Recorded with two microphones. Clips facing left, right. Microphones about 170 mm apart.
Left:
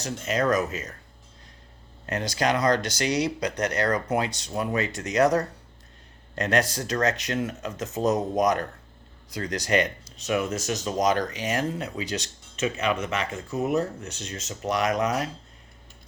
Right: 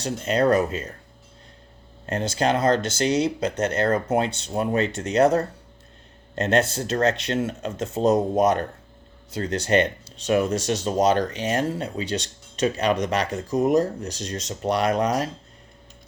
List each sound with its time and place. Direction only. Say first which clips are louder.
0.0 s speech: right 4 dB; 35° right (ahead or behind)
2.0 s speech: right 3 dB; 25° right (ahead or behind)